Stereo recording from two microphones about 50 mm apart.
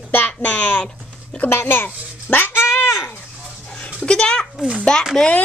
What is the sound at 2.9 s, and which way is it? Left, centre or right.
Livestock, left.